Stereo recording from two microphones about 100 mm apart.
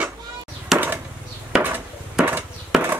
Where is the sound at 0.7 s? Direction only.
5° right (ahead or behind).